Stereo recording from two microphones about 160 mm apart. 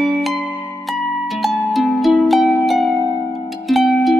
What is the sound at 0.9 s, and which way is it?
Harp, centre (ahead or behind).